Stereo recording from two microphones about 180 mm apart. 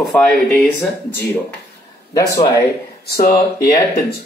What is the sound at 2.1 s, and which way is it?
Speech, 20° left (ahead or behind).